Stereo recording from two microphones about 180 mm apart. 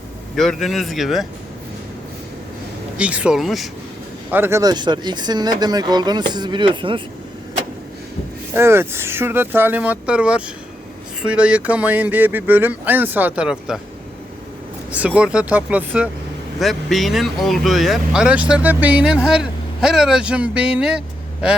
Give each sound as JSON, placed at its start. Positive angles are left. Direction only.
{"t": 0.3, "sound": "speech", "side_deg": 0}
{"t": 3.0, "sound": "speech", "side_deg": -5}
{"t": 4.3, "sound": "speech", "side_deg": -10}
{"t": 8.5, "sound": "speech", "side_deg": -15}
{"t": 14.8, "sound": "speech", "side_deg": -10}